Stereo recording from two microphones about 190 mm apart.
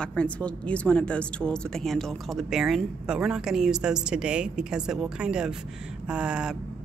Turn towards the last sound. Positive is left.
turn(degrees=-5)  # may be behind; listen again after turning